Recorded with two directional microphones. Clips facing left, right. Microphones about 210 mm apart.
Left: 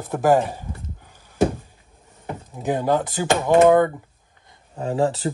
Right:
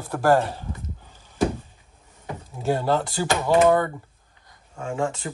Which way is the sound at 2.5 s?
15° left (ahead or behind).